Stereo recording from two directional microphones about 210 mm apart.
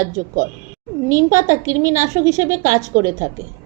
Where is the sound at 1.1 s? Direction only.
15° right (ahead or behind).